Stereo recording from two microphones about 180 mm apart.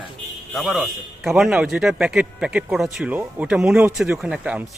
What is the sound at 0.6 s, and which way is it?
Speech, centre (ahead or behind).